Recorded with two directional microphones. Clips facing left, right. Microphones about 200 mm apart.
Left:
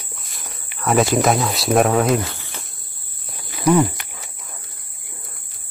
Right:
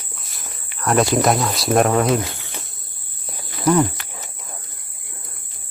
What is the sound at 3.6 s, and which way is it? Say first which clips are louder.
Cricket: left 1 dB; 10° left (ahead or behind).